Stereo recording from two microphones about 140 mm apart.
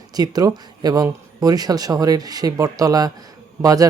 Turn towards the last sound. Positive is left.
turn(degrees=-25)  # may be behind; listen again after turning